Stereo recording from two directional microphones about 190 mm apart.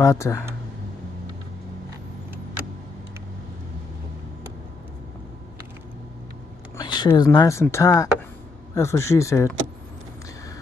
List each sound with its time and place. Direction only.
0.0 s speech: 15° left (ahead or behind)
6.8 s speech: 20° left (ahead or behind)